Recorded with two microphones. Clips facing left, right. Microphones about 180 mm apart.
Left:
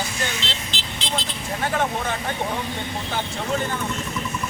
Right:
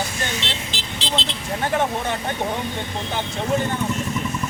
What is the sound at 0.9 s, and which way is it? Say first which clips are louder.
Speech: right 2 dB; 25° right (ahead or behind).